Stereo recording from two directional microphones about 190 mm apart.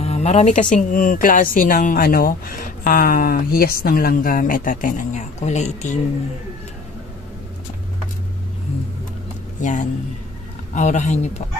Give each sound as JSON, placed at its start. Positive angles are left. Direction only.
{"t": 0.0, "sound": "speech", "side_deg": 35}
{"t": 9.6, "sound": "speech", "side_deg": 40}